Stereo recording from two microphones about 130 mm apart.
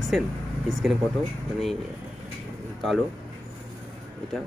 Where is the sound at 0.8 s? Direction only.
Centre (ahead or behind).